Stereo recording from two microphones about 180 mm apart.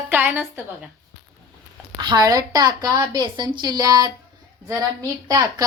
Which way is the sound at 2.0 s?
25° right (ahead or behind).